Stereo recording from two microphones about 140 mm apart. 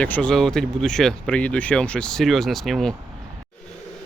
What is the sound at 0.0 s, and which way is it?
Speech, 10° left (ahead or behind).